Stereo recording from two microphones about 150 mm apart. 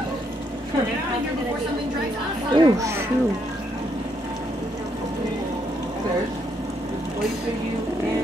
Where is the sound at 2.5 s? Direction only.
30° right (ahead or behind).